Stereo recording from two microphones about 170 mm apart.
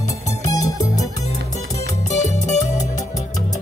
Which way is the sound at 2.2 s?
45° left (ahead or behind).